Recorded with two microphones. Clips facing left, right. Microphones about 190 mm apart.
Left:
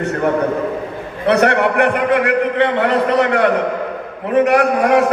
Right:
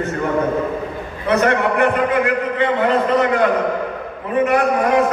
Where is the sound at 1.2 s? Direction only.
70° left (ahead or behind).